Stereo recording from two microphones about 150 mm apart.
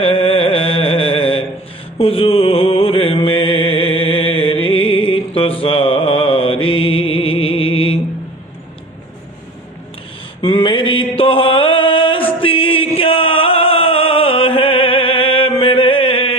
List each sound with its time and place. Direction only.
0.0 s mantra: 40° left (ahead or behind)
10.4 s a sound: 35° left (ahead or behind)
11.2 s music: 35° left (ahead or behind)